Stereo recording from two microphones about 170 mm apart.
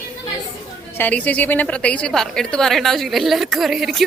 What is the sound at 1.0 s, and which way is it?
A woman's voice, 10° left (ahead or behind).